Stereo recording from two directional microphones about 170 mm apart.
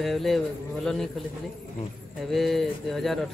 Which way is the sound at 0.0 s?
Centre (ahead or behind).